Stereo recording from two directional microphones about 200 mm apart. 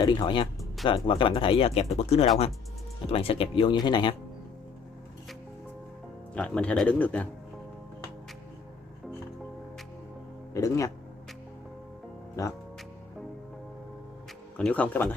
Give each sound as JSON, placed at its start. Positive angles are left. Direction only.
{"t": 0.0, "sound": "speech", "side_deg": 25}
{"t": 6.3, "sound": "speech", "side_deg": 5}
{"t": 10.5, "sound": "speech", "side_deg": 15}
{"t": 12.4, "sound": "speech", "side_deg": 15}
{"t": 14.6, "sound": "speech", "side_deg": 5}